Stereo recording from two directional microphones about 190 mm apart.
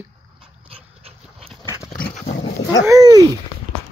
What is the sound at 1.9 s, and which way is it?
Dog, 45° left (ahead or behind).